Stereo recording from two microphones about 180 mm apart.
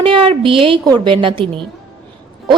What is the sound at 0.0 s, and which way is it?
A woman's voice, 30° right (ahead or behind).